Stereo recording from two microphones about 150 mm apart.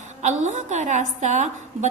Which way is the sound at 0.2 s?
50° right (ahead or behind).